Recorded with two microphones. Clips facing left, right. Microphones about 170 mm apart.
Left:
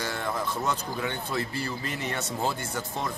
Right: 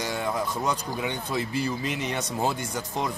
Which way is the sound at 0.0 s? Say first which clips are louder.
Right 2 dB; 15° right (ahead or behind).